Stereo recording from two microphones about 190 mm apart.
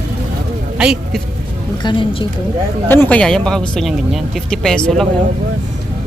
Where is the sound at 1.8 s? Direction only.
25° left (ahead or behind).